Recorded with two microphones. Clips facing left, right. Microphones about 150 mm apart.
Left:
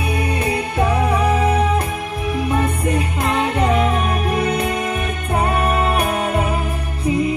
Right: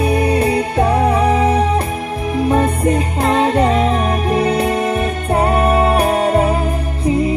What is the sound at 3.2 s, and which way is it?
Music, 35° right (ahead or behind).